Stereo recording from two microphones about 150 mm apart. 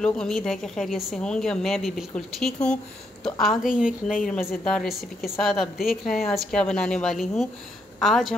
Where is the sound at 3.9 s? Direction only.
60° left (ahead or behind).